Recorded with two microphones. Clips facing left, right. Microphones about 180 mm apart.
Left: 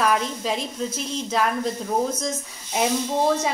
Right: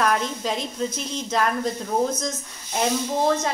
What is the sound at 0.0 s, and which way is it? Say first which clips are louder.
Speech: even; 5° left (ahead or behind).